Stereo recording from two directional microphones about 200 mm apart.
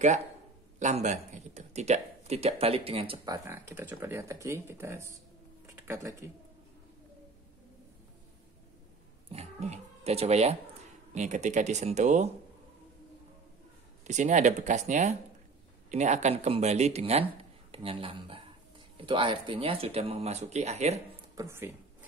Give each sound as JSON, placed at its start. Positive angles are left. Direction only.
{"t": 0.7, "sound": "speech", "side_deg": -35}
{"t": 3.4, "sound": "speech", "side_deg": -10}
{"t": 9.3, "sound": "speech", "side_deg": -35}
{"t": 14.0, "sound": "speech", "side_deg": -35}
{"t": 21.4, "sound": "speech", "side_deg": -10}